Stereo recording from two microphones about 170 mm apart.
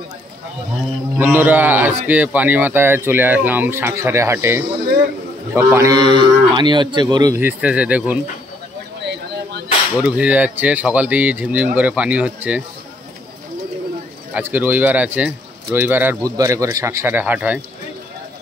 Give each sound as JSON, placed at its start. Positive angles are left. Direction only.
{"t": 1.1, "sound": "speech", "side_deg": -10}
{"t": 5.5, "sound": "cattle", "side_deg": -15}
{"t": 7.3, "sound": "speech", "side_deg": -10}
{"t": 10.0, "sound": "speech", "side_deg": -5}
{"t": 14.3, "sound": "speech", "side_deg": -10}